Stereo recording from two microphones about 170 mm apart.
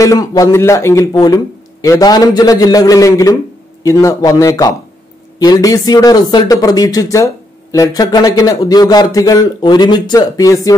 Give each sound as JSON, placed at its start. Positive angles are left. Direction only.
{"t": 0.0, "sound": "speech", "side_deg": 20}